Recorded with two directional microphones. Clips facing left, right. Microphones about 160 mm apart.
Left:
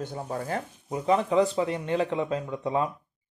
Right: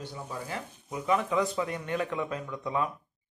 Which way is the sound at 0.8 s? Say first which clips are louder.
Left 4 dB; 30° left (ahead or behind).